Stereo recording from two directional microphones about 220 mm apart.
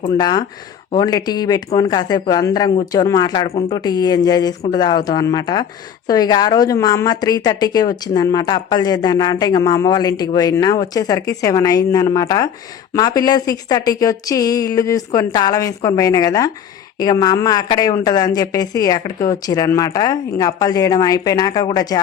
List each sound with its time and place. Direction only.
0.1 s speech: 15° left (ahead or behind)
3.8 s speech: 20° left (ahead or behind)